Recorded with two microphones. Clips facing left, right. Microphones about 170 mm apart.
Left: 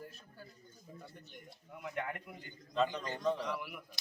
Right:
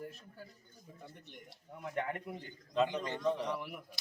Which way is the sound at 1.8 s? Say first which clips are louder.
Right 3 dB; 30° right (ahead or behind).